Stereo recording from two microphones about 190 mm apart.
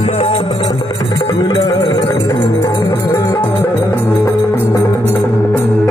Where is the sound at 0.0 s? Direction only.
30° left (ahead or behind).